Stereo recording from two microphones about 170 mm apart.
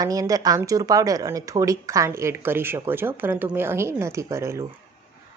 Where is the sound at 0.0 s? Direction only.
20° right (ahead or behind).